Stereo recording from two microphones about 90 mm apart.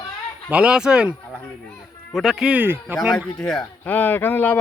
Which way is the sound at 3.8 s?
20° left (ahead or behind).